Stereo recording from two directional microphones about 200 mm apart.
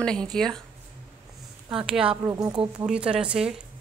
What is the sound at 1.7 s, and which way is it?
Speech, 5° right (ahead or behind).